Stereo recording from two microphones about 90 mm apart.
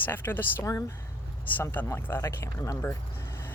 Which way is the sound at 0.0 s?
25° left (ahead or behind).